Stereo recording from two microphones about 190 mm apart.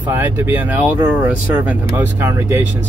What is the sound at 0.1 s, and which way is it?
Speech, 10° right (ahead or behind).